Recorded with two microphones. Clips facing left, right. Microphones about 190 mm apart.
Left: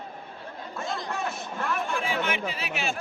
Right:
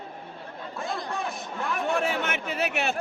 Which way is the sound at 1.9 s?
65° right (ahead or behind).